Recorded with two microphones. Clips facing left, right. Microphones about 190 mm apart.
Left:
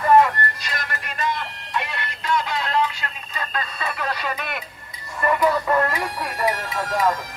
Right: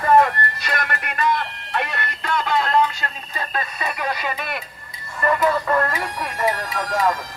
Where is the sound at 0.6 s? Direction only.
60° right (ahead or behind); by 3.1 s 45° right (ahead or behind).